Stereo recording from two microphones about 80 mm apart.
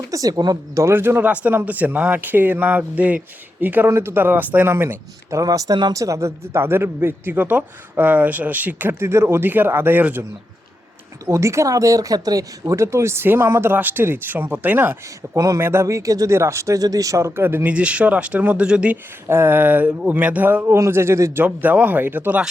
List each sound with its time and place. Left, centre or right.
0.1 s speech: right
5.4 s speech: right
5.9 s speech: right
11.3 s speech: right
15.4 s speech: right
15.6 s speech: right
17.7 s speech: centre
19.3 s speech: right
21.4 s speech: centre